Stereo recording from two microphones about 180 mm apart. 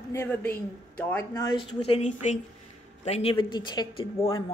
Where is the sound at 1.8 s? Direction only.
35° left (ahead or behind).